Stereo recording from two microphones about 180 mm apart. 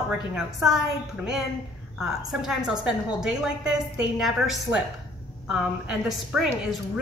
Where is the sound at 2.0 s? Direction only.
Centre (ahead or behind).